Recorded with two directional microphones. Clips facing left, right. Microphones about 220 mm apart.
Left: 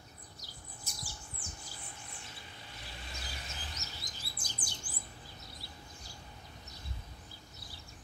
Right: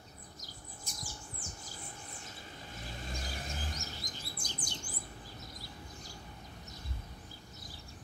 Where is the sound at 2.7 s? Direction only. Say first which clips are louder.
Right 7 dB; 45° right (ahead or behind).